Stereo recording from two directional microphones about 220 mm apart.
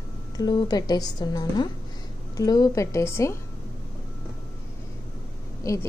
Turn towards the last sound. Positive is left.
turn(degrees=15)  # may be behind; listen again after turning